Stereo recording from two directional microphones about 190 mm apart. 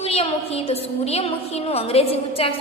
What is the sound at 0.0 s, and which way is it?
A woman's voice, 30° left (ahead or behind).